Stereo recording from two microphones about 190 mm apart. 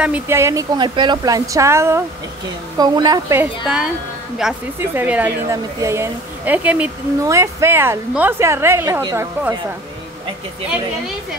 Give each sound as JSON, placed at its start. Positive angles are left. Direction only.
{"t": 0.0, "sound": "a woman's voice", "side_deg": -10}
{"t": 3.6, "sound": "a woman's voice", "side_deg": -5}